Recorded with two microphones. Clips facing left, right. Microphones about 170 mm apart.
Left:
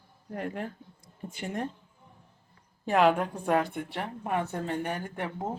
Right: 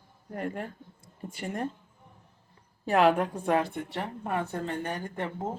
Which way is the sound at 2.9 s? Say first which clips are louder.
Right 1 dB; centre (ahead or behind).